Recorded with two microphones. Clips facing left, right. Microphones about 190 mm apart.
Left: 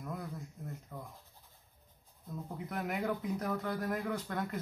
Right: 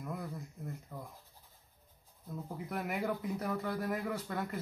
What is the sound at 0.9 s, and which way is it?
Scratch, 5° right (ahead or behind).